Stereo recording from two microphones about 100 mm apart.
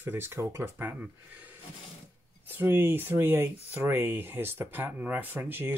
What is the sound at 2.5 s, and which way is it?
Speech, 20° right (ahead or behind).